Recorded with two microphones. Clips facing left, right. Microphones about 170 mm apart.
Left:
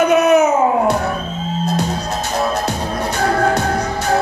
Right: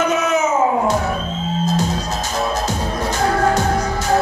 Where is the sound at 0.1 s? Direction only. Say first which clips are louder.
Left 6 dB; 60° left (ahead or behind).